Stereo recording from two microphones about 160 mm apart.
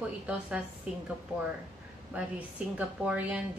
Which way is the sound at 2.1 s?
10° right (ahead or behind).